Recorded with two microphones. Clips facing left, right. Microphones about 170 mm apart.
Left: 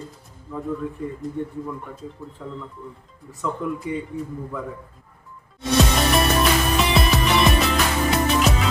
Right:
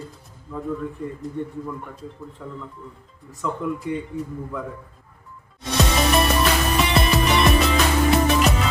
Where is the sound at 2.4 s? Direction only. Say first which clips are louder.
Left 2 dB; 5° right (ahead or behind).